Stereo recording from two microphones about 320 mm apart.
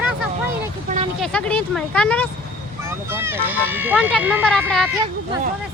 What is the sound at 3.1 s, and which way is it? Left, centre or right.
Speech, centre.